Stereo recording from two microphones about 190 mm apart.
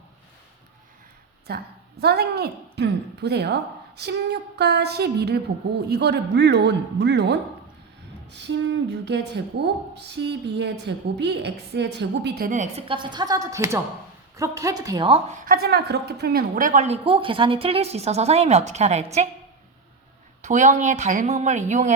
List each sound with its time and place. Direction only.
1.5 s a woman's voice: 55° right (ahead or behind); by 15.4 s 30° right (ahead or behind)
15.4 s a woman's voice: 50° right (ahead or behind); by 19.3 s 35° right (ahead or behind)
20.4 s a woman's voice: 40° right (ahead or behind)